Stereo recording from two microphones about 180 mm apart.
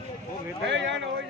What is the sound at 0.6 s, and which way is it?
Speech, 85° right.